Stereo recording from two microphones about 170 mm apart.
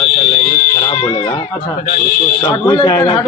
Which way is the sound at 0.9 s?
30° left (ahead or behind).